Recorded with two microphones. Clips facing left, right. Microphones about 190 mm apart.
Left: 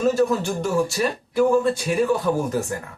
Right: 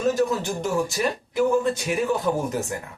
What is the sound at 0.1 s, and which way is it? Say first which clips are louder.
Speech: left 3 dB; 20° right (ahead or behind).